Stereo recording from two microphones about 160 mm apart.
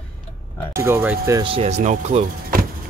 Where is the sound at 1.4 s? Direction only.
35° right (ahead or behind).